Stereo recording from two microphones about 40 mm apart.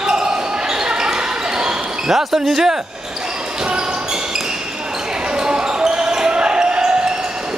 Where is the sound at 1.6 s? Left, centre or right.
Centre.